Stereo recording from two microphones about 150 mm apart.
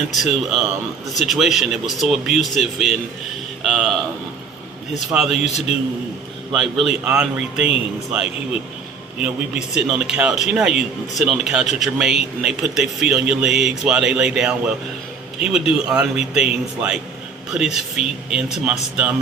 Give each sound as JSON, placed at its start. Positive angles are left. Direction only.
{"t": 0.1, "sound": "speech", "side_deg": 0}
{"t": 4.9, "sound": "speech", "side_deg": 0}
{"t": 5.4, "sound": "a man's voice", "side_deg": 45}
{"t": 6.5, "sound": "speech", "side_deg": -5}
{"t": 9.2, "sound": "speech", "side_deg": -5}